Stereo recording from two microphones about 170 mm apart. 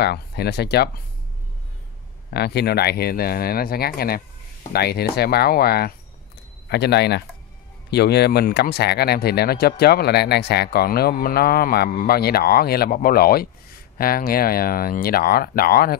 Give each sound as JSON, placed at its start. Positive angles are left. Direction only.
{"t": 0.0, "sound": "speech", "side_deg": 70}
{"t": 2.3, "sound": "speech", "side_deg": 75}
{"t": 6.7, "sound": "speech", "side_deg": 80}